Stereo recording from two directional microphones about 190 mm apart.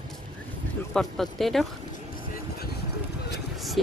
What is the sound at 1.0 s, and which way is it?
Speech, centre (ahead or behind).